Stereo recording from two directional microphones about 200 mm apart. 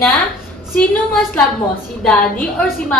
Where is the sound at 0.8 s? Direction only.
5° left (ahead or behind).